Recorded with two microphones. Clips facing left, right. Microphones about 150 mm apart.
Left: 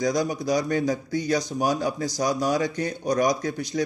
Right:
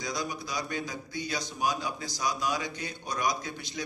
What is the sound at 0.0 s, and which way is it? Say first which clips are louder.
A man's voice: left 11 dB; 45° left (ahead or behind).